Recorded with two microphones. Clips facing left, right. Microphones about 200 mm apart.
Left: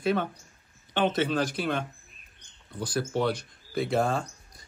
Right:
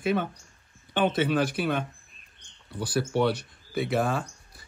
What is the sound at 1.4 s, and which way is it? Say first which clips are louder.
Speech: right 2 dB; 60° right (ahead or behind).